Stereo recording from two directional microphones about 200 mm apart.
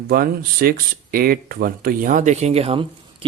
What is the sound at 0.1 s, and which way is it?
Speech, 45° right (ahead or behind).